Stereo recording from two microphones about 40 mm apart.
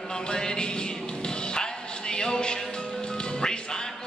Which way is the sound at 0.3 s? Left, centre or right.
Centre.